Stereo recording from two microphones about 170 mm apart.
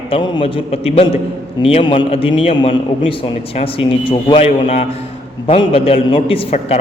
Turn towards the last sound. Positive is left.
turn(degrees=35)  # may be behind; listen again after turning